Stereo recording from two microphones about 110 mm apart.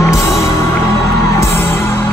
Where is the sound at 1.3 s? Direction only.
20° left (ahead or behind).